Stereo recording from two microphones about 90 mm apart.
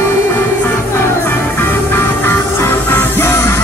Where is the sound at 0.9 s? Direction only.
25° left (ahead or behind).